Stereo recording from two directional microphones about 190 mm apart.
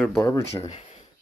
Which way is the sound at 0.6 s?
35° left (ahead or behind).